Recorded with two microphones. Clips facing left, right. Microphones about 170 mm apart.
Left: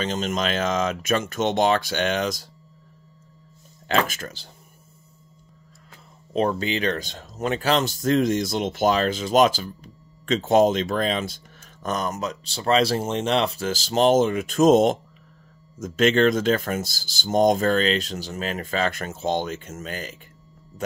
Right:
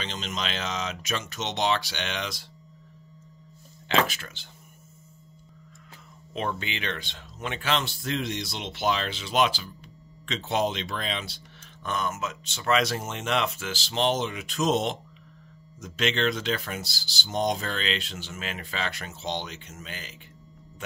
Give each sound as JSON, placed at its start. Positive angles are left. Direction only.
{"t": 0.0, "sound": "speech", "side_deg": 45}
{"t": 3.9, "sound": "speech", "side_deg": 45}
{"t": 6.3, "sound": "speech", "side_deg": 35}